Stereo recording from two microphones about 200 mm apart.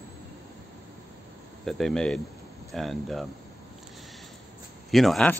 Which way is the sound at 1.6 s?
5° left (ahead or behind).